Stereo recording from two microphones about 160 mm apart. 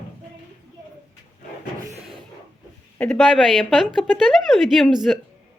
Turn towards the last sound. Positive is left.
turn(degrees=0)  # may be behind; listen again after turning